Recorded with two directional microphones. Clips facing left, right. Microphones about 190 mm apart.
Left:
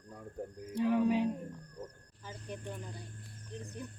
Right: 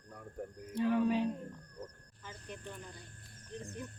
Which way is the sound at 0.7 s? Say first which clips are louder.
Left 1 dB; 10° left (ahead or behind).